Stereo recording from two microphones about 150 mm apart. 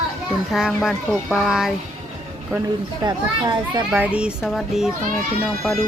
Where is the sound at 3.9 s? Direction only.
5° right (ahead or behind).